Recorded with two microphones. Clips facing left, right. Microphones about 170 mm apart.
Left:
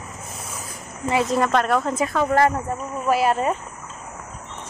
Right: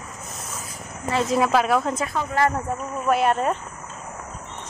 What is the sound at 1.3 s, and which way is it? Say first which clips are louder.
Speech: right 3 dB; 5° right (ahead or behind).